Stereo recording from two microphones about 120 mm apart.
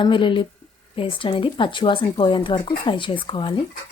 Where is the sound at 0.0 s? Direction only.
45° left (ahead or behind).